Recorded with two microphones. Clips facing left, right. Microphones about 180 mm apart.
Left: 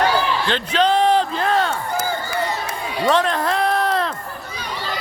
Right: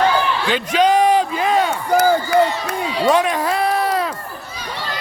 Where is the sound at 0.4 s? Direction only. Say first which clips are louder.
Right 3 dB; 10° right (ahead or behind).